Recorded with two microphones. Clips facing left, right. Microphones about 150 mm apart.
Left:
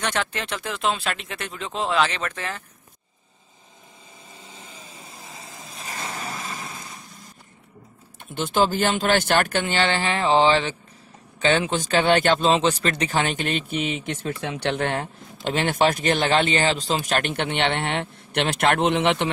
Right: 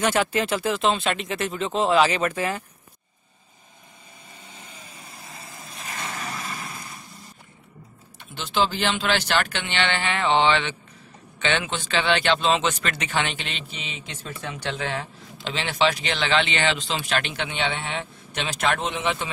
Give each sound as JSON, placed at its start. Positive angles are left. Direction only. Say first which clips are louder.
{"t": 0.0, "sound": "speech", "louder": "right 5 dB", "side_deg": -5}
{"t": 4.7, "sound": "vehicle", "louder": "left 1 dB", "side_deg": 0}
{"t": 8.4, "sound": "speech", "louder": "left 3 dB", "side_deg": 50}